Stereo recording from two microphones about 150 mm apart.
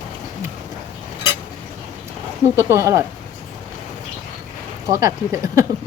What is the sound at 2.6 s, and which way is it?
Speech, 20° right (ahead or behind).